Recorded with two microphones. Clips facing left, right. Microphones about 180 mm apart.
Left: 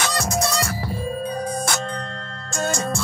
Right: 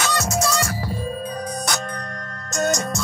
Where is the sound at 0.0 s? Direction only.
30° left (ahead or behind).